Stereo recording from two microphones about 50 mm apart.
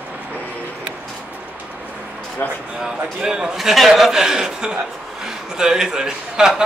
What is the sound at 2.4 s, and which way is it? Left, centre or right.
Speech, left.